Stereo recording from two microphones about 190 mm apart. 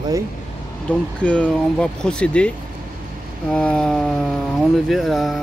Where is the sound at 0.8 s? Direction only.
5° left (ahead or behind).